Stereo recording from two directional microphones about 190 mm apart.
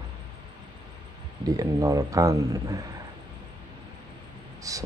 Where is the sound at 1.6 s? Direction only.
15° right (ahead or behind).